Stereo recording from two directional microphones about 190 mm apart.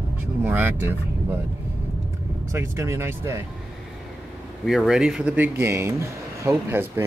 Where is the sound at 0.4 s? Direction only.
10° right (ahead or behind).